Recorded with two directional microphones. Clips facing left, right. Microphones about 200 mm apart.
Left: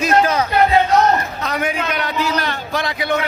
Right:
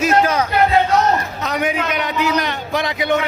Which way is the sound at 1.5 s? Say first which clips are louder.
Right 2 dB; 20° right (ahead or behind).